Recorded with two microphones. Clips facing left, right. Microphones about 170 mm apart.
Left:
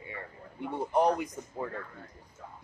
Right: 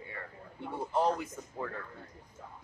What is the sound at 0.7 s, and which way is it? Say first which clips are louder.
Speech: left 4 dB; 15° left (ahead or behind).